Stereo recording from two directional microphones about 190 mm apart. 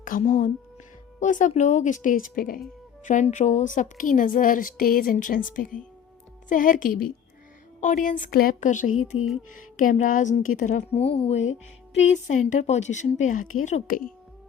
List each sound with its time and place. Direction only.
0.0 s a woman's voice: 45° left (ahead or behind)